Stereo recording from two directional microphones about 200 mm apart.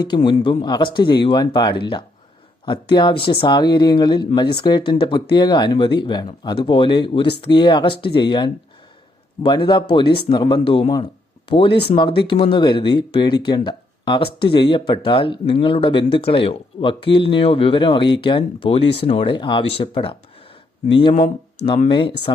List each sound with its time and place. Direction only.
0.1 s speech: 25° left (ahead or behind)